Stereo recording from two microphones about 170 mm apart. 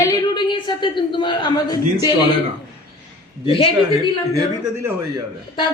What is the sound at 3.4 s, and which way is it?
Speech, 30° left (ahead or behind).